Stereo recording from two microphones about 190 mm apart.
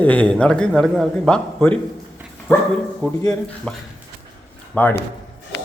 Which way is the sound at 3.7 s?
5° left (ahead or behind).